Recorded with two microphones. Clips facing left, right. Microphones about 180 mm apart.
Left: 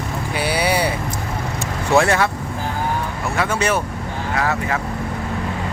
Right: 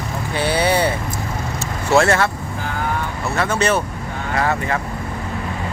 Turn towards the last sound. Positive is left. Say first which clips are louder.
# right 1 dB
turn(degrees=0)  # may be behind; listen again after turning